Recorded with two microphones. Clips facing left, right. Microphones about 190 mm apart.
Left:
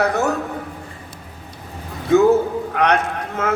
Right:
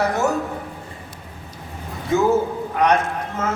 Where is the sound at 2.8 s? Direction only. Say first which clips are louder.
Right 1 dB; 65° left (ahead or behind).